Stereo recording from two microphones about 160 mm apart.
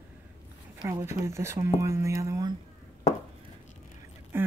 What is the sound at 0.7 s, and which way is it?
Speech, 15° right (ahead or behind).